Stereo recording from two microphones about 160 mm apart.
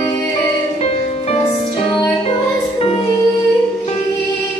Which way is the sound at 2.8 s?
35° left (ahead or behind).